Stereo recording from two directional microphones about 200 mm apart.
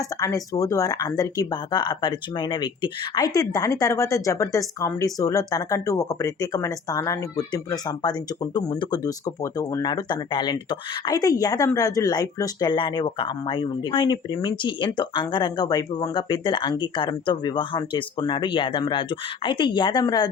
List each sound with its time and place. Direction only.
0.0 s speech: 15° left (ahead or behind)